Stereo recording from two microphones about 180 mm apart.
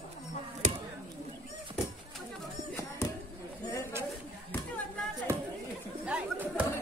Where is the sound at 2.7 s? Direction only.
15° left (ahead or behind).